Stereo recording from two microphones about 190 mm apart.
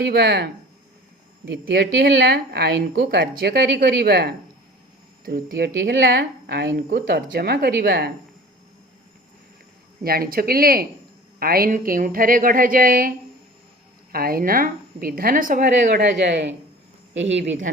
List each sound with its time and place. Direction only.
0.1 s speech: 60° right (ahead or behind)
1.7 s speech: 55° right (ahead or behind)
5.5 s speech: 65° right (ahead or behind)
10.0 s a woman's voice: 50° right (ahead or behind); by 17.6 s 70° right (ahead or behind)